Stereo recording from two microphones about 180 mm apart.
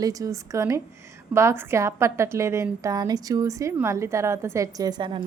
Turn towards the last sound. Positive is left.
turn(degrees=-25)  # may be behind; listen again after turning